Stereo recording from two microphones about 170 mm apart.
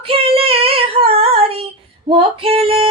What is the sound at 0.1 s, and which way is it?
Child singing, 35° right (ahead or behind).